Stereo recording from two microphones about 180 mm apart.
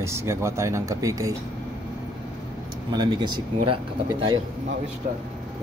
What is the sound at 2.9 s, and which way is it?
Speech, 25° right (ahead or behind).